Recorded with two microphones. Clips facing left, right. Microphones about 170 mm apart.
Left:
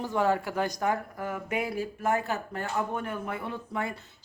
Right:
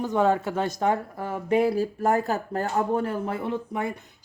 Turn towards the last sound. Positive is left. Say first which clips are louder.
# right 5 dB
turn(degrees=-20)  # may be behind; listen again after turning